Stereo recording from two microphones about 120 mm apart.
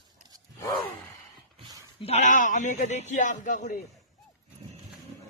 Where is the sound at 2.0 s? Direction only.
60° left (ahead or behind); by 3.8 s 90° left.